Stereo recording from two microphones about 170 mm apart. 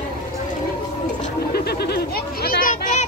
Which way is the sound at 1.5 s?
70° left (ahead or behind).